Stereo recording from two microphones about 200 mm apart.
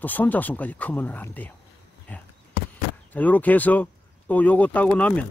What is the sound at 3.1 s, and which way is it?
Speech, 10° left (ahead or behind).